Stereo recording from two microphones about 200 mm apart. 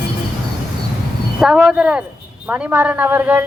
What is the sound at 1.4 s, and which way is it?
Speech, 5° right (ahead or behind).